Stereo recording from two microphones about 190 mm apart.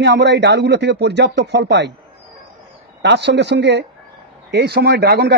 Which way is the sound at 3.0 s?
65° right (ahead or behind).